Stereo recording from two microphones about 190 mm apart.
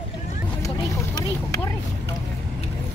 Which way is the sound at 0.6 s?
15° left (ahead or behind).